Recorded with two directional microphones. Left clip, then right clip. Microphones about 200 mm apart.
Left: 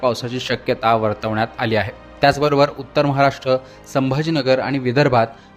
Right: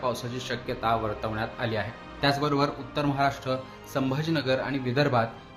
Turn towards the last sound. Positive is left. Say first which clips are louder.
# left 9 dB
turn(degrees=40)  # may be behind; listen again after turning